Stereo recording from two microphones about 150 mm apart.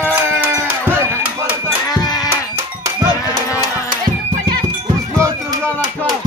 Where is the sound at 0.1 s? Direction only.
15° right (ahead or behind).